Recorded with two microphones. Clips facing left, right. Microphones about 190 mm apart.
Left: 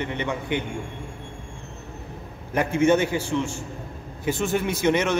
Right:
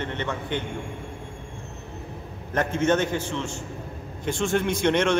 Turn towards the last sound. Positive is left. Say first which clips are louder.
# even
turn(degrees=5)  # may be behind; listen again after turning